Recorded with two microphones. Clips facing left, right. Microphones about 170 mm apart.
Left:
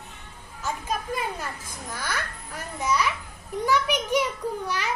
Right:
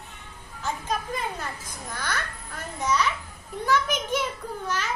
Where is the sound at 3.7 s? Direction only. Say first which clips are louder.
Left 1 dB; 10° left (ahead or behind).